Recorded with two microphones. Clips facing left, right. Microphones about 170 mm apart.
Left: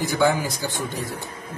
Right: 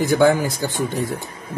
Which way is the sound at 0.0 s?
55° right (ahead or behind).